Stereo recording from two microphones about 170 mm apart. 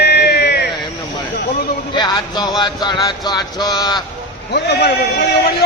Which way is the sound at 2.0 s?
25° left (ahead or behind).